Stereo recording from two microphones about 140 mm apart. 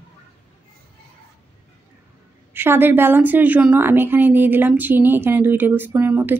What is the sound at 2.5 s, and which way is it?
A woman's voice, 15° right (ahead or behind).